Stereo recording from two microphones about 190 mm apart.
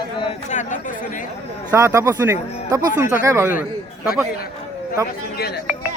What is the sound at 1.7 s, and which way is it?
Speech, 15° right (ahead or behind).